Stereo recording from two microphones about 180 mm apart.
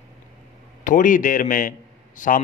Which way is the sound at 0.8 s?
45° left (ahead or behind).